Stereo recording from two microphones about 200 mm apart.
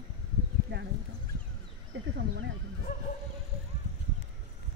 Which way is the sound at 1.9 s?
65° right (ahead or behind).